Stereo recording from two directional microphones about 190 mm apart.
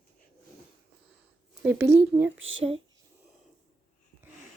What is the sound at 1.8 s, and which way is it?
Speech, 65° right (ahead or behind).